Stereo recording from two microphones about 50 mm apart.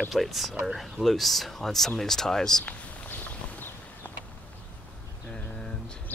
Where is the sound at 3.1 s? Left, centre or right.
Left.